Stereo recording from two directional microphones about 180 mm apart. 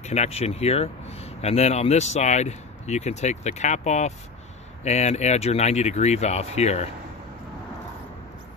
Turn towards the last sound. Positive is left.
turn(degrees=35)  # may be behind; listen again after turning